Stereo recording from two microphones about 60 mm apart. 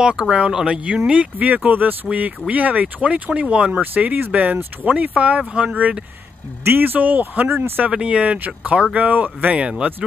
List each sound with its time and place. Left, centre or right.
0.0 s speech: centre
1.1 s speech: right
3.8 s speech: right
6.6 s speech: right
7.8 s speech: centre